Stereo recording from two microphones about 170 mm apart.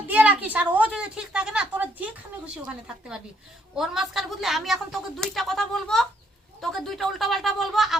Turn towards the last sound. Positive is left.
turn(degrees=0)  # may be behind; listen again after turning